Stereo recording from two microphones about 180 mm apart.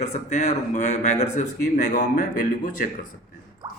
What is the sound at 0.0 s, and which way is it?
A man's voice, 40° left (ahead or behind).